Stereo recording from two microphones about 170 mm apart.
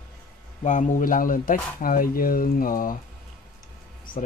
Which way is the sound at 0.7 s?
45° left (ahead or behind).